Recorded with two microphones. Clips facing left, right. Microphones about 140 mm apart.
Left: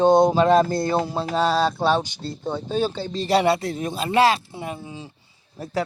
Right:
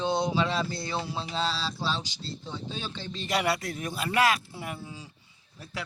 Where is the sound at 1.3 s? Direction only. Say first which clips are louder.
Left 13 dB; 55° left (ahead or behind); by 5.1 s 25° left (ahead or behind).